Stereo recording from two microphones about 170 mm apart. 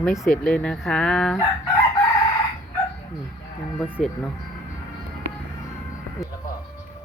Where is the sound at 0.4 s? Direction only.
5° left (ahead or behind).